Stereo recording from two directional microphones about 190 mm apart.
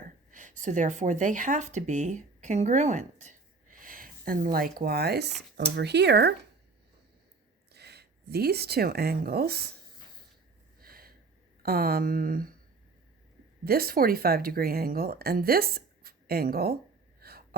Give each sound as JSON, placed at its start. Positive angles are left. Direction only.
{"t": 0.3, "sound": "speech", "side_deg": -40}
{"t": 7.7, "sound": "speech", "side_deg": -60}
{"t": 10.8, "sound": "snort", "side_deg": -50}
{"t": 11.6, "sound": "a woman's voice", "side_deg": -50}
{"t": 13.7, "sound": "a woman's voice", "side_deg": -50}
{"t": 17.2, "sound": "a sound", "side_deg": -55}